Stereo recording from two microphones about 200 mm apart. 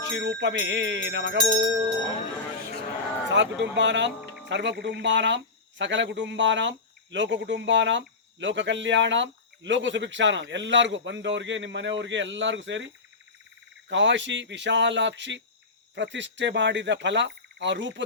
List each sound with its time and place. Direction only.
0.0 s speech: 60° right (ahead or behind)
3.2 s speech: 65° right (ahead or behind)